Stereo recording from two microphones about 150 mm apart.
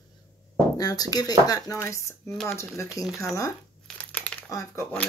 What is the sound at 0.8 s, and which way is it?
Speech, 25° left (ahead or behind).